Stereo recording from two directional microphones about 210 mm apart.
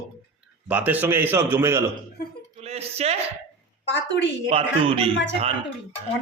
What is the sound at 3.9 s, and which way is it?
Speech, 60° left (ahead or behind).